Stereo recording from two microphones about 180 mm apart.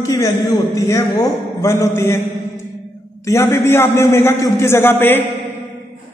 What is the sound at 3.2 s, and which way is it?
A man's voice, 15° left (ahead or behind).